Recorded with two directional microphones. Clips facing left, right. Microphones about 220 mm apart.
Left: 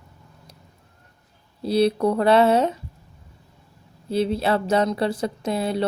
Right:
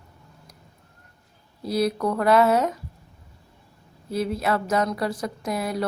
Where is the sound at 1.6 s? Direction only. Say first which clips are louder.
Left 4 dB; 30° left (ahead or behind).